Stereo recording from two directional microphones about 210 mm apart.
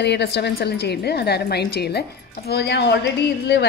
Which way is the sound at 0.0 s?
55° left (ahead or behind).